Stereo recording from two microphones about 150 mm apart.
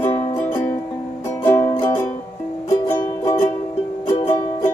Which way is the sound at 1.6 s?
35° left (ahead or behind).